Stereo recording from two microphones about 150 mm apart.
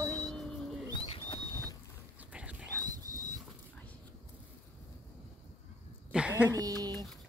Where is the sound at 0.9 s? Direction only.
35° left (ahead or behind).